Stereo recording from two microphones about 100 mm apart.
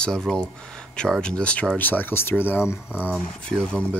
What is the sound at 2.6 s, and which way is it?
Speech, 10° right (ahead or behind).